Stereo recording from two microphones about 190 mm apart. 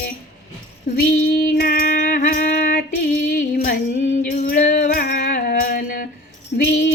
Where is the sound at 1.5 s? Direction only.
50° left (ahead or behind).